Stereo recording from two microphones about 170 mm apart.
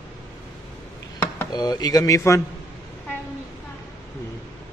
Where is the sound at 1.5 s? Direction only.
25° left (ahead or behind).